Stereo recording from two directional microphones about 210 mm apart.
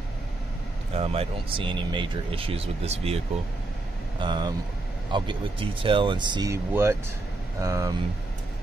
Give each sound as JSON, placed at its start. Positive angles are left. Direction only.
{"t": 0.9, "sound": "speech", "side_deg": -30}
{"t": 4.2, "sound": "speech", "side_deg": -20}